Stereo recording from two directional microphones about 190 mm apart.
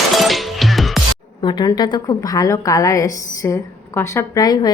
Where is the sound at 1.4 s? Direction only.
20° left (ahead or behind).